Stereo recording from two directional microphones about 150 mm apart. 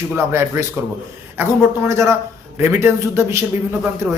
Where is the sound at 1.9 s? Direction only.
20° right (ahead or behind).